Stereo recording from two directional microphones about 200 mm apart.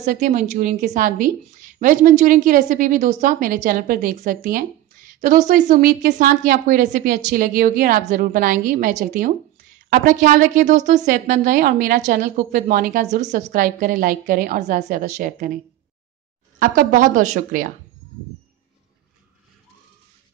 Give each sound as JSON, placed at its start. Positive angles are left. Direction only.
{"t": 0.0, "sound": "a woman's voice", "side_deg": -35}
{"t": 16.5, "sound": "a woman's voice", "side_deg": -40}